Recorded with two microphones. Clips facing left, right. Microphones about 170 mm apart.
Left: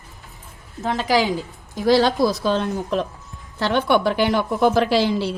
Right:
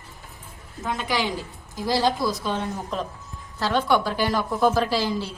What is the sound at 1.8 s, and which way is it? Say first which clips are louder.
A woman's voice: left 6 dB; 70° left (ahead or behind).